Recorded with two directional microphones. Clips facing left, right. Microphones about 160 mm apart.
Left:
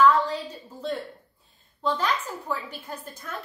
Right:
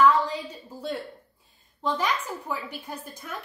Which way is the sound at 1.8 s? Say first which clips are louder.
Left 1 dB; 15° right (ahead or behind).